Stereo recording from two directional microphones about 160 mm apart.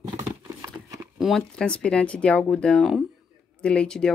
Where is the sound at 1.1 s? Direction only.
Centre (ahead or behind).